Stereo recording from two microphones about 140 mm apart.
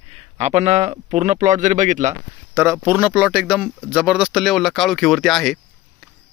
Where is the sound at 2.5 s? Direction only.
20° right (ahead or behind).